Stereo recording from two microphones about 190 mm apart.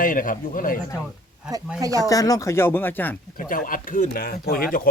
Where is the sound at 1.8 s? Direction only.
20° right (ahead or behind).